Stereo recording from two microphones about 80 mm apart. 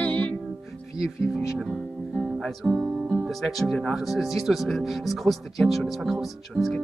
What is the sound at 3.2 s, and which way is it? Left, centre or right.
Speech, centre.